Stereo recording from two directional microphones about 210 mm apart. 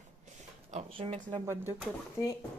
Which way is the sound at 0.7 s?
30° right (ahead or behind).